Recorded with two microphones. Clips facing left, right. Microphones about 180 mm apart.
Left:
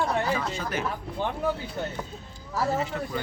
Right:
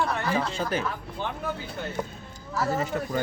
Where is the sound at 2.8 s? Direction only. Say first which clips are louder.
Right 2 dB; 45° right (ahead or behind).